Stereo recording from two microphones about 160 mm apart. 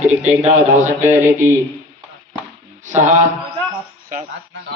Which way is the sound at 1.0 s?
15° right (ahead or behind).